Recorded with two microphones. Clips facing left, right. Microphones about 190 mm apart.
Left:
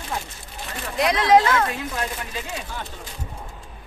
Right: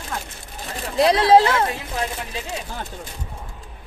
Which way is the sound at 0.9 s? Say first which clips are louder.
Right 3 dB; 30° right (ahead or behind).